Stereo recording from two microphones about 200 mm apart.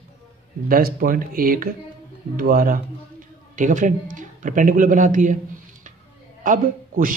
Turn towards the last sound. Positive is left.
turn(degrees=-40)  # may be behind; listen again after turning